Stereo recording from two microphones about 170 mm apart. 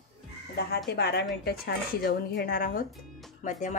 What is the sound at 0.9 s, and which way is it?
A woman's voice, 70° left (ahead or behind).